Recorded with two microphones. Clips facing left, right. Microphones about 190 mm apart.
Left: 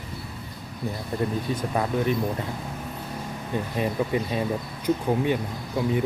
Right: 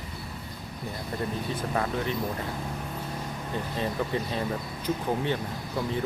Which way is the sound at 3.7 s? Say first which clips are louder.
Left 4 dB; 15° left (ahead or behind).